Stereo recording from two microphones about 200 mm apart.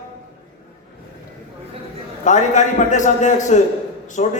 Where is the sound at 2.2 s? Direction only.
35° left (ahead or behind).